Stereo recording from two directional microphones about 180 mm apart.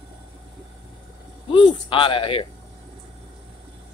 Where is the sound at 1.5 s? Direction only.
25° left (ahead or behind).